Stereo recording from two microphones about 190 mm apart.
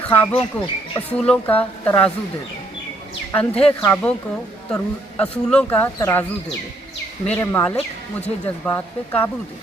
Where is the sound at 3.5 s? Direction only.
30° left (ahead or behind).